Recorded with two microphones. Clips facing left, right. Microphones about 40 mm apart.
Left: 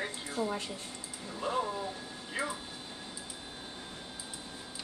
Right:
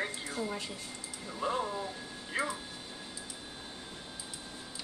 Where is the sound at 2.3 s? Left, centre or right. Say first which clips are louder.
Right 2 dB; centre.